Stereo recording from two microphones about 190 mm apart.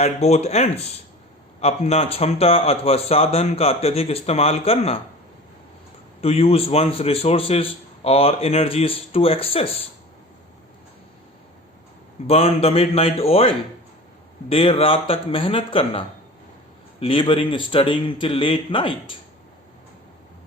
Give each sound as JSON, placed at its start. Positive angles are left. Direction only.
{"t": 0.0, "sound": "a man's voice", "side_deg": 35}
{"t": 6.2, "sound": "a man's voice", "side_deg": 30}
{"t": 12.3, "sound": "a man's voice", "side_deg": 30}